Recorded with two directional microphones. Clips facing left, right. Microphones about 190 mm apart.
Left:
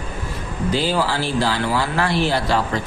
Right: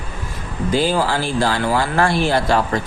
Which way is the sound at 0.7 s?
50° right (ahead or behind).